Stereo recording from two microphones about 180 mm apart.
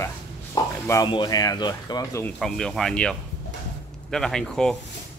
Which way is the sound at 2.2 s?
Centre (ahead or behind).